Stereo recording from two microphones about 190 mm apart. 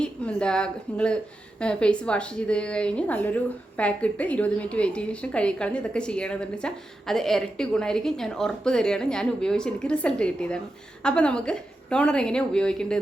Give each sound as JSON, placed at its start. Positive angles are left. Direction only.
{"t": 0.0, "sound": "a woman's voice", "side_deg": 5}